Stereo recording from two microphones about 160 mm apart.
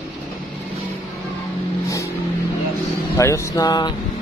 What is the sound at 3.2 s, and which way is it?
Speech, 20° left (ahead or behind).